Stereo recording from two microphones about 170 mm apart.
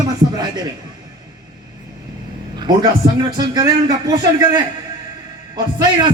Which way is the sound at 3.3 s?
25° right (ahead or behind).